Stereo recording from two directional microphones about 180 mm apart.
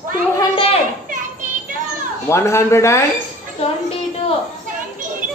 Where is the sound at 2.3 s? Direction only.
15° left (ahead or behind).